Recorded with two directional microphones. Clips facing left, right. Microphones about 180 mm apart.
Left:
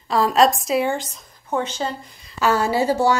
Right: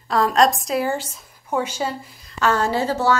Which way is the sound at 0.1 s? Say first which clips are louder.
Left 1 dB; centre (ahead or behind).